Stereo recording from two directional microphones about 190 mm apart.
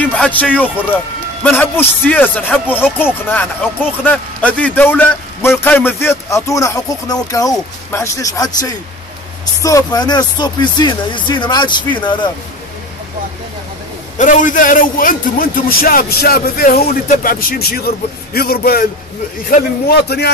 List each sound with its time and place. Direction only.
0.0 s a man's voice: 5° left (ahead or behind); by 12.3 s 25° left (ahead or behind)
14.1 s a man's voice: 40° left (ahead or behind)
19.9 s a man's voice: 60° left (ahead or behind)